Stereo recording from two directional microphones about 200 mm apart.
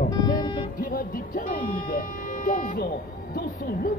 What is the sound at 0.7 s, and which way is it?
Music, 45° left (ahead or behind).